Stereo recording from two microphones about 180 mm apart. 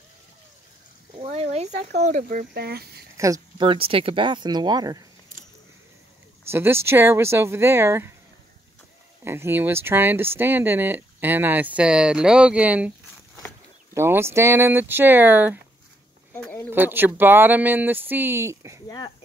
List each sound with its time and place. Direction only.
1.1 s a sound: 35° right (ahead or behind)
2.0 s speech: 45° right (ahead or behind); by 3.1 s 60° right (ahead or behind)
3.5 s speech: 30° right (ahead or behind)
6.5 s speech: 15° right (ahead or behind)
9.2 s speech: 15° right (ahead or behind)
13.9 s speech: 15° right (ahead or behind)
16.7 s speech: 10° right (ahead or behind)
18.9 s speech: 25° left (ahead or behind)